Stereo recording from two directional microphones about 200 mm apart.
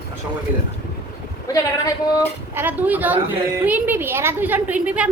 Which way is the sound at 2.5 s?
10° right (ahead or behind).